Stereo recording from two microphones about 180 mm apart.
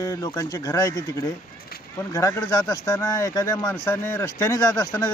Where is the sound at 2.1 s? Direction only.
20° left (ahead or behind).